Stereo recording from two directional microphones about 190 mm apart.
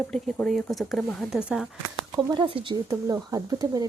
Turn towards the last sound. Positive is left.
turn(degrees=-20)  # may be behind; listen again after turning